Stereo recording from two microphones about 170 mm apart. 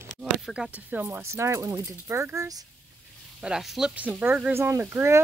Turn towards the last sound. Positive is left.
turn(degrees=-15)  # may be behind; listen again after turning